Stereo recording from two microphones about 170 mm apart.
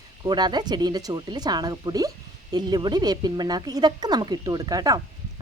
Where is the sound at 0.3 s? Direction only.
25° right (ahead or behind).